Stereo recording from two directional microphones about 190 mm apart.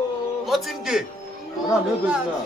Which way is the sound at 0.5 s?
Centre (ahead or behind).